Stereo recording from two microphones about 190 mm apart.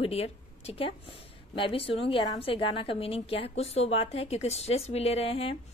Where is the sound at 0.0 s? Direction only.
30° left (ahead or behind).